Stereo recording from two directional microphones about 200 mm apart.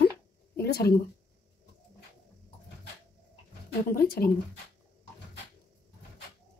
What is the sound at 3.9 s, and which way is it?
Speech, 50° left (ahead or behind).